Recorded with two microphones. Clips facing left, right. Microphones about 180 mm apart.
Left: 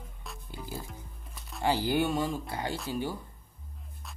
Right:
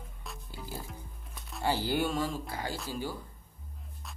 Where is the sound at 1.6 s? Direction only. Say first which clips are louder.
Left 3 dB; 15° left (ahead or behind).